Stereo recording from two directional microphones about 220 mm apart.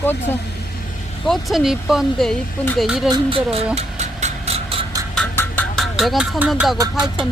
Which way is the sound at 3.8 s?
30° right (ahead or behind).